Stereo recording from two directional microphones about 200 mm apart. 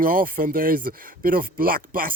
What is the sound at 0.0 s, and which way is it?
Speech, 45° right (ahead or behind).